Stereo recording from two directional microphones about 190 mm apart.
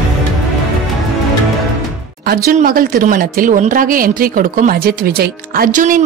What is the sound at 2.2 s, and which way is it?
Speech, 50° right (ahead or behind).